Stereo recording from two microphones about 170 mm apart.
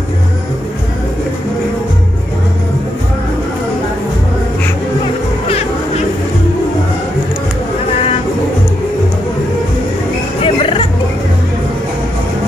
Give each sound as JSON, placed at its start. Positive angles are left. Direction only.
{"t": 10.4, "sound": "hubbub", "side_deg": 30}